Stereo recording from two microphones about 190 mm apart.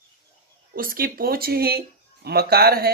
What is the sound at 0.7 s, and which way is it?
Speech, 50° right (ahead or behind).